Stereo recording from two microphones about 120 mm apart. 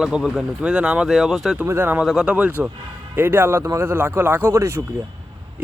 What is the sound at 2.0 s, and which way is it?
Speech, centre (ahead or behind).